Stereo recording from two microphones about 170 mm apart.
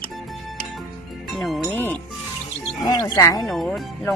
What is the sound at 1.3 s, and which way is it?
Music, centre (ahead or behind).